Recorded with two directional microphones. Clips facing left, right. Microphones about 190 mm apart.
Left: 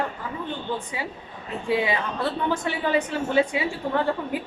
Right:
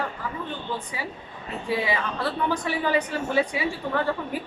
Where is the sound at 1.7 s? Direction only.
25° left (ahead or behind).